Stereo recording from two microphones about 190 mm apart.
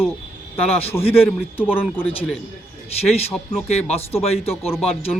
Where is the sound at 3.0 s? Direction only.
35° left (ahead or behind).